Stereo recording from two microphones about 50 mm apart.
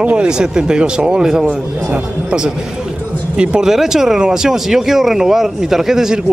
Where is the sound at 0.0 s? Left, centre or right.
Right.